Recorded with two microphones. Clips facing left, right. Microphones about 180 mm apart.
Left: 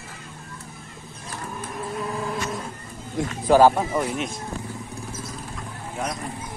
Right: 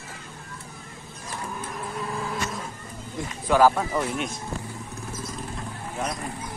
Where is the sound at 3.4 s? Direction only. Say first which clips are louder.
Left 3 dB; 35° left (ahead or behind).